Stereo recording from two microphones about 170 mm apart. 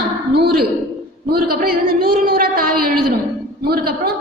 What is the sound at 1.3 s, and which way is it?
A woman's voice, 60° right (ahead or behind).